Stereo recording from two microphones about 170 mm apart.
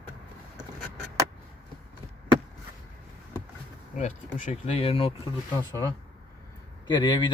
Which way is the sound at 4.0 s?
45° left (ahead or behind).